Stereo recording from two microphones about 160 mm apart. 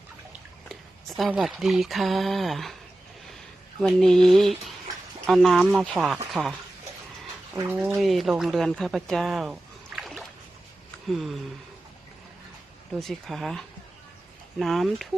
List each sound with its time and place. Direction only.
0.7 s a sound: centre (ahead or behind)
1.3 s speech: 5° right (ahead or behind)
3.8 s speech: centre (ahead or behind)
7.5 s speech: 15° right (ahead or behind)
7.9 s speech: centre (ahead or behind)
13.0 s speech: centre (ahead or behind)